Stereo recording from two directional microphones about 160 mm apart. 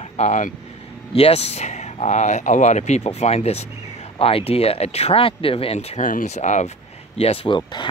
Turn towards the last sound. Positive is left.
turn(degrees=30)  # may be behind; listen again after turning